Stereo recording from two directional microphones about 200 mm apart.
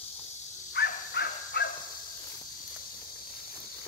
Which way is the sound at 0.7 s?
50° left (ahead or behind).